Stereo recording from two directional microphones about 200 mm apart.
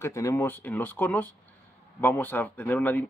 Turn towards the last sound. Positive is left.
turn(degrees=10)  # may be behind; listen again after turning